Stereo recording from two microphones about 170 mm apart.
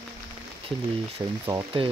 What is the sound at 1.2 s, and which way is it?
Speech, 20° right (ahead or behind).